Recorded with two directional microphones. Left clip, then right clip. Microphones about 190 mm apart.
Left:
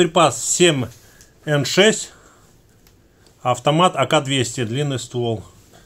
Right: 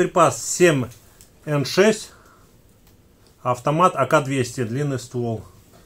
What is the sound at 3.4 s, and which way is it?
Speech, 35° left (ahead or behind).